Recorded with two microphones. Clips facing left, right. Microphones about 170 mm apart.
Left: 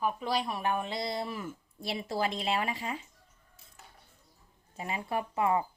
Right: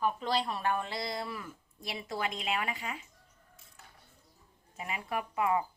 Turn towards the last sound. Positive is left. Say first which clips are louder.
# left 2 dB
turn(degrees=30)  # may be behind; listen again after turning